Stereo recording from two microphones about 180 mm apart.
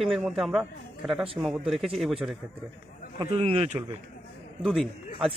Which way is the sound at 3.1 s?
30° right (ahead or behind).